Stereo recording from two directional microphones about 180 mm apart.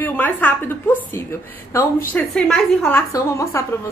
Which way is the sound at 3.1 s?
15° left (ahead or behind).